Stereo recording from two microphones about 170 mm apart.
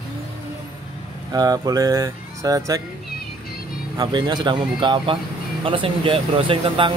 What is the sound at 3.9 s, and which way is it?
Speech, 25° right (ahead or behind).